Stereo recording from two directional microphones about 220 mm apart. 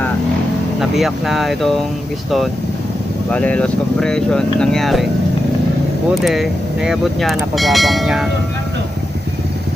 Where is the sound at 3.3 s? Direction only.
5° left (ahead or behind).